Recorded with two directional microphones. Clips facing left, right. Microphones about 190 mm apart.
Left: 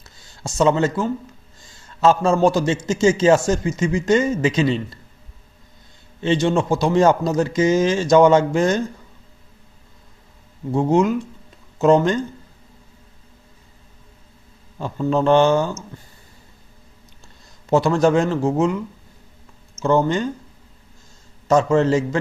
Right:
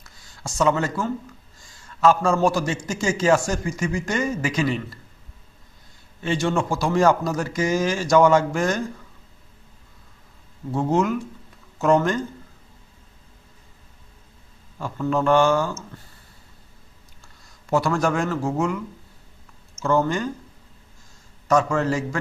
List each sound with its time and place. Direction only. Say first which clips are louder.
0.0 s a sound: left 3 dB; 25° left (ahead or behind)
1.6 s a man's voice: left 2 dB; 25° left (ahead or behind)
6.2 s a man's voice: left 5 dB; 20° left (ahead or behind)
10.7 s a man's voice: left 4 dB; 15° left (ahead or behind)
14.8 s a man's voice: left 3 dB; 20° left (ahead or behind)
17.7 s a man's voice: left 5 dB; 20° left (ahead or behind)
19.8 s a man's voice: left 3 dB; 20° left (ahead or behind)
21.4 s a man's voice: left 4 dB; 25° left (ahead or behind)